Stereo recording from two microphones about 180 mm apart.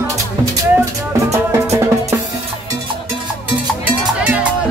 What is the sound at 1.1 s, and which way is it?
Music, 15° right (ahead or behind).